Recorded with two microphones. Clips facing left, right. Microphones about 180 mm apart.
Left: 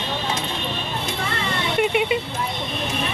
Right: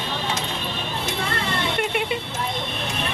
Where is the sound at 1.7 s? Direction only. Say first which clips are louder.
Left 8 dB; 5° left (ahead or behind).